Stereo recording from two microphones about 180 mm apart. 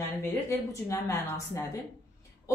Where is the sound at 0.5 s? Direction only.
15° left (ahead or behind).